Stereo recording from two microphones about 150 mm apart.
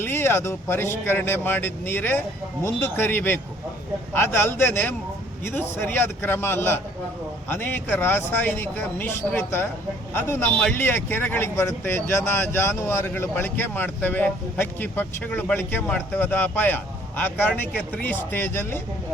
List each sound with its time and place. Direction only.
0.0 s a man's voice: 15° left (ahead or behind)